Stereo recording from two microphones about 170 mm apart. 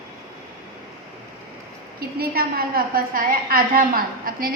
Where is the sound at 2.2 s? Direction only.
60° right (ahead or behind).